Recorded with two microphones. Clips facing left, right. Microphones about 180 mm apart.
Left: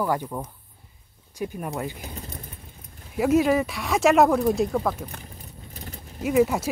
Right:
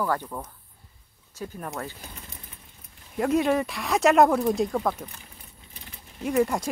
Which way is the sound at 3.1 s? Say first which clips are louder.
Left 3 dB; 5° left (ahead or behind).